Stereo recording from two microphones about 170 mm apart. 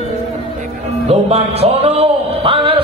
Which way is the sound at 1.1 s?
35° right (ahead or behind).